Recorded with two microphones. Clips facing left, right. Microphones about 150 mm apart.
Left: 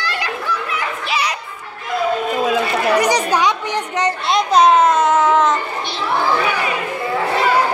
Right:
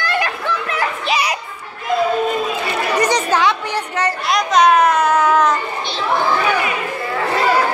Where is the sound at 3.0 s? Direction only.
15° left (ahead or behind).